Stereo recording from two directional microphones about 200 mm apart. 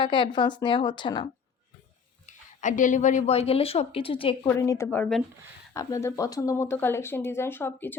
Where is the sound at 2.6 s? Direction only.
40° left (ahead or behind).